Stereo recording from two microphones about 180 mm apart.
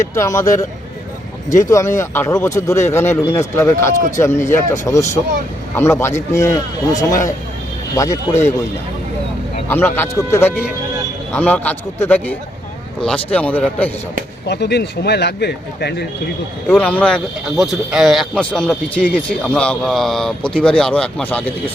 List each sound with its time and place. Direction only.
0.0 s a man's voice: 15° left (ahead or behind)
1.5 s speech: 45° left (ahead or behind)
1.7 s a man's voice: 15° left (ahead or behind)
9.6 s a man's voice: 10° left (ahead or behind)
14.4 s speech: 65° left (ahead or behind)
16.7 s a man's voice: 10° left (ahead or behind)